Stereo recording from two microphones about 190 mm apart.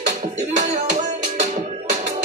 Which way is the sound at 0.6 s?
40° right (ahead or behind).